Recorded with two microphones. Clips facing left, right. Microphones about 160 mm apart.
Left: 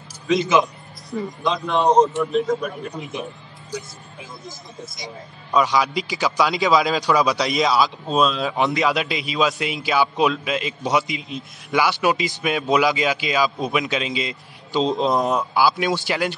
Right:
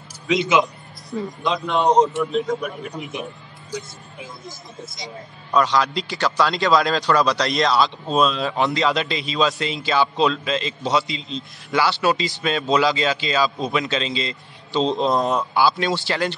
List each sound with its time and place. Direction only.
0.3 s a man's voice: 20° right (ahead or behind)
1.9 s a man's voice: 15° right (ahead or behind)
2.3 s speech: centre (ahead or behind)
2.9 s a man's voice: 15° right (ahead or behind)
5.0 s a man's voice: 10° left (ahead or behind)
8.5 s a man's voice: 20° left (ahead or behind)
8.8 s a man's voice: 5° left (ahead or behind)
14.8 s speech: centre (ahead or behind)
15.7 s a man's voice: 15° left (ahead or behind)